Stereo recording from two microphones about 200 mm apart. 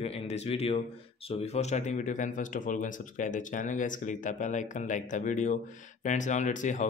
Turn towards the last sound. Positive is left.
turn(degrees=40)  # may be behind; listen again after turning